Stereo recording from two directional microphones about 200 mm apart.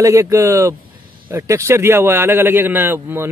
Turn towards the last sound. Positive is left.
turn(degrees=-10)  # may be behind; listen again after turning